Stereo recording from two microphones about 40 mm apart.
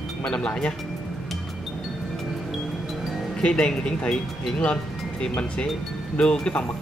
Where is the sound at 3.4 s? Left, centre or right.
Left.